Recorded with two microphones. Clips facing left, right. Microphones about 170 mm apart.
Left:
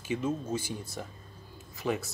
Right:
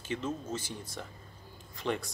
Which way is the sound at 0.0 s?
10° left (ahead or behind).